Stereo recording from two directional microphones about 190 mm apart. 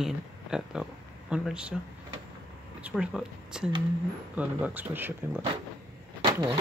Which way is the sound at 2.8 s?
5° right (ahead or behind).